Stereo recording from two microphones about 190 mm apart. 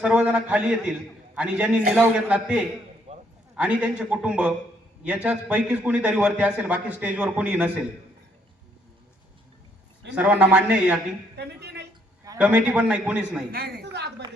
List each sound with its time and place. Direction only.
0.0 s a man's voice: 5° right (ahead or behind)
3.1 s a sound: 30° right (ahead or behind)
3.5 s a man's voice: 5° right (ahead or behind)
10.2 s a man's voice: 5° right (ahead or behind)
11.3 s a sound: 60° right (ahead or behind)
12.4 s a man's voice: 5° right (ahead or behind)
13.5 s a woman's voice: 55° right (ahead or behind)